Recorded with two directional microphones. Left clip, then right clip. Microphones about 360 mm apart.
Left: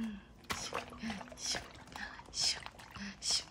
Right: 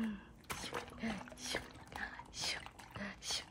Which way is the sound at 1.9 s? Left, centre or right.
Centre.